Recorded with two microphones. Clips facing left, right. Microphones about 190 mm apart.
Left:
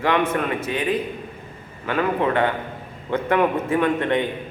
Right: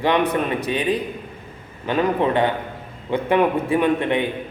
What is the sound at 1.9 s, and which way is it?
A man's voice, 20° right (ahead or behind).